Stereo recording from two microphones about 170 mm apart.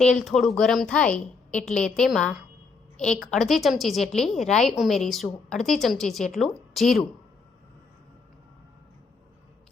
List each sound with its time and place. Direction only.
0.0 s a woman's voice: 5° left (ahead or behind)